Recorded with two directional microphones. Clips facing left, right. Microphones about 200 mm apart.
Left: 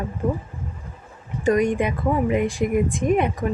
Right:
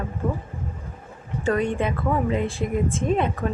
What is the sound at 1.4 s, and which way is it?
Speech, 15° left (ahead or behind).